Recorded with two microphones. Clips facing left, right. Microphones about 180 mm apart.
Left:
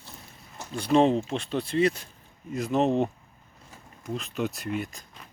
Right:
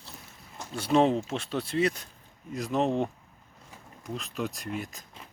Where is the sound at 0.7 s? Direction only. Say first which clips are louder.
Left 2 dB; 5° right (ahead or behind).